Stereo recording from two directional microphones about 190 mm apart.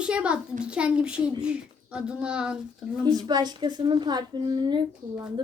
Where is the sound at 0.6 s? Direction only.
5° right (ahead or behind).